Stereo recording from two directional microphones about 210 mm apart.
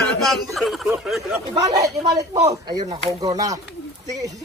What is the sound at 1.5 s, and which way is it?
Speech, 15° right (ahead or behind).